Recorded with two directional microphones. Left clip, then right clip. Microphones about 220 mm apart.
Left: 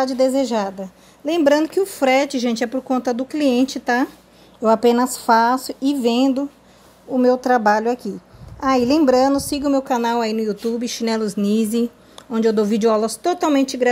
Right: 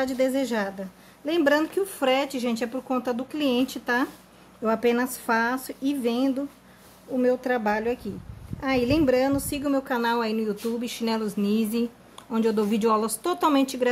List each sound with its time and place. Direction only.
0.2 s speech: 15° left (ahead or behind)
7.4 s speech: 25° left (ahead or behind)